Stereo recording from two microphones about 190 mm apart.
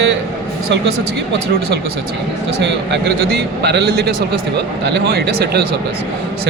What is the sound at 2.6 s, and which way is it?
A man's voice, 65° right (ahead or behind).